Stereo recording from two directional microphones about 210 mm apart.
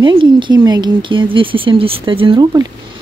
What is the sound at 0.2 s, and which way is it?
A woman's voice, 20° right (ahead or behind).